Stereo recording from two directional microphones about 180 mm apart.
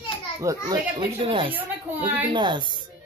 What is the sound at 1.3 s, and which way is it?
Speech, 30° right (ahead or behind).